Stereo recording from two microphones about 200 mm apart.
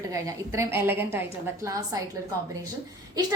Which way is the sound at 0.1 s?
15° right (ahead or behind).